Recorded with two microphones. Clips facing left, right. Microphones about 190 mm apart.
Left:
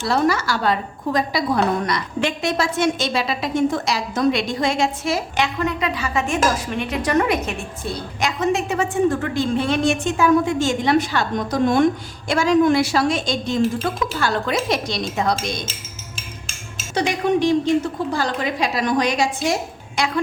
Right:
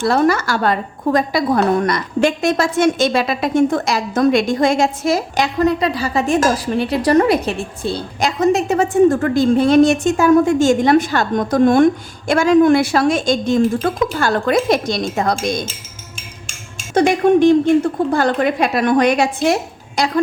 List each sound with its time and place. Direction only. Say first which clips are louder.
0.0 s a woman's voice: right 4 dB; 50° right (ahead or behind)
16.9 s a woman's voice: right 7 dB; 50° right (ahead or behind)
20.0 s a woman's voice: right 4 dB; 35° right (ahead or behind)